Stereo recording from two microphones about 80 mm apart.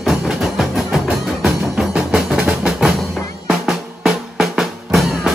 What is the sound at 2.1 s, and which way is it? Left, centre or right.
Music, centre.